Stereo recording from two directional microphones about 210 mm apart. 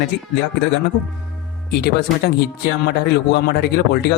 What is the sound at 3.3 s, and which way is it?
Speech, 50° left (ahead or behind).